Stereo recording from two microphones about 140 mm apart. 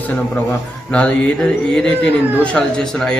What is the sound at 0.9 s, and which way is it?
Speech, 10° left (ahead or behind).